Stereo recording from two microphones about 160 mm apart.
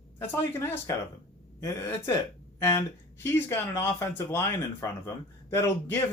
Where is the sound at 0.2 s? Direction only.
15° left (ahead or behind).